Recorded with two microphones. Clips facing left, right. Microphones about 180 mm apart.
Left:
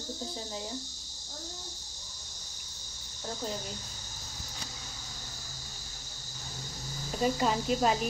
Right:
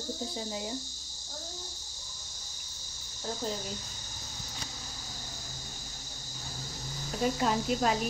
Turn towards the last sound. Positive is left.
turn(degrees=0)  # may be behind; listen again after turning